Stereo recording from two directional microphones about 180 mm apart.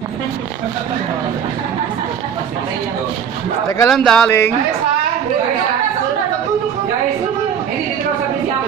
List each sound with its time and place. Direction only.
3.6 s a man's voice: 20° left (ahead or behind)
3.9 s speech: centre (ahead or behind)